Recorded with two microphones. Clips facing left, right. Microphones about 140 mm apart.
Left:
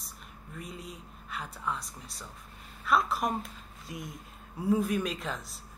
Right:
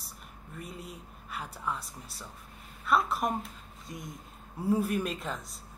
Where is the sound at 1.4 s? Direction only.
5° right (ahead or behind).